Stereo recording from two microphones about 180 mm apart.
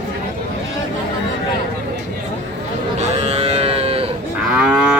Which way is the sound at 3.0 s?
35° right (ahead or behind).